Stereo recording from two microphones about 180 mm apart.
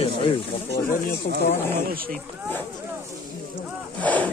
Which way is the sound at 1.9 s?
55° right (ahead or behind).